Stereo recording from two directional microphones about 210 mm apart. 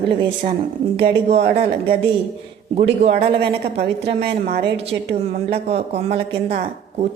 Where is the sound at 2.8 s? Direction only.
30° right (ahead or behind).